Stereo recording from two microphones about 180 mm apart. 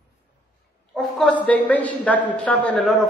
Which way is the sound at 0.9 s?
5° left (ahead or behind).